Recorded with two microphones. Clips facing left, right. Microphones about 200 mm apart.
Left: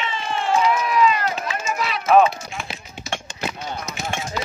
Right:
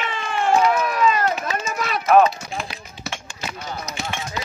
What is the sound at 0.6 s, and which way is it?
Run, 50° right (ahead or behind).